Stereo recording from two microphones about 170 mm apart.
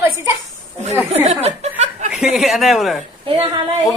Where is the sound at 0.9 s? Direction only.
10° right (ahead or behind).